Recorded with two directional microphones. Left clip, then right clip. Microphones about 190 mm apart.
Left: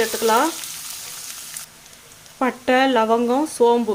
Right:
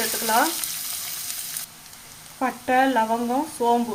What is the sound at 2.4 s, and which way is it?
Speech, 55° left (ahead or behind).